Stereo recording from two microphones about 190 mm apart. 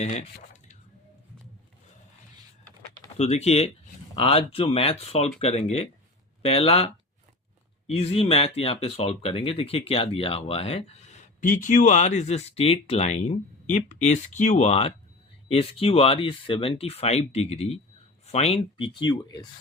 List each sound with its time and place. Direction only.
0.0 s speech: 35° left (ahead or behind)
3.2 s speech: 35° left (ahead or behind)